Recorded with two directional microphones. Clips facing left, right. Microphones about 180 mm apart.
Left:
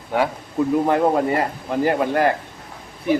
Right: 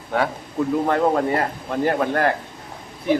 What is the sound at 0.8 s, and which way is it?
A man's voice, 10° left (ahead or behind).